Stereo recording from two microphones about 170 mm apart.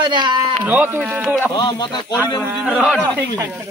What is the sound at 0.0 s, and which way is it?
Speech, 25° right (ahead or behind).